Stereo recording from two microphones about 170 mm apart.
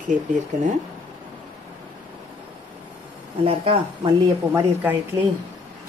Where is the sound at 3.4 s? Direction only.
35° right (ahead or behind).